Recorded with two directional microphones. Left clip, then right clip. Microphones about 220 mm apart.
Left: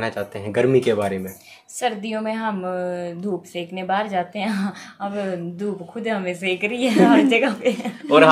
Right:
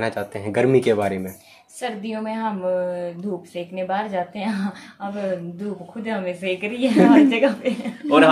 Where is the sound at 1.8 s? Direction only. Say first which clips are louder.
Left 4 dB; 50° left (ahead or behind).